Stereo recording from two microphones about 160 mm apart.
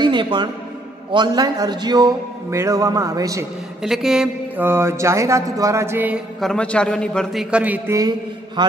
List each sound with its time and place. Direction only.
0.0 s music: 30° right (ahead or behind)
1.1 s a man's voice: 25° right (ahead or behind)
3.8 s a man's voice: centre (ahead or behind)
4.6 s mantra: 15° right (ahead or behind)
6.4 s a man's voice: 5° left (ahead or behind)
7.5 s mantra: 10° right (ahead or behind)
8.6 s a man's voice: 25° right (ahead or behind)